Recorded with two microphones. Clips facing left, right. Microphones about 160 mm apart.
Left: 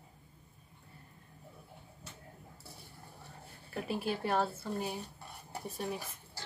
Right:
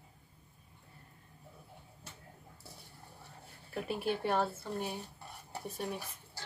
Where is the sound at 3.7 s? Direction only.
Centre (ahead or behind).